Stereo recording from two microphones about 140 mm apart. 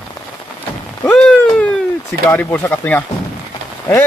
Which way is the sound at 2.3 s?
15° left (ahead or behind).